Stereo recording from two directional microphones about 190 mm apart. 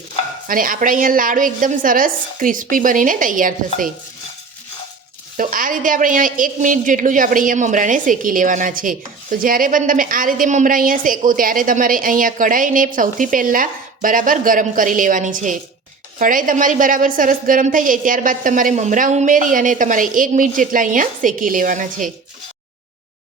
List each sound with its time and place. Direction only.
0.4 s a woman's voice: 45° right (ahead or behind)
5.4 s a woman's voice: 45° right (ahead or behind)